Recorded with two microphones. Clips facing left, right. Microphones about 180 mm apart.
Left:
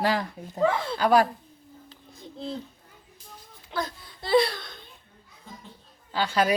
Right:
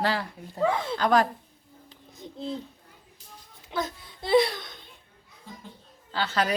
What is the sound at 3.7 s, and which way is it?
A child's voice, 20° right (ahead or behind).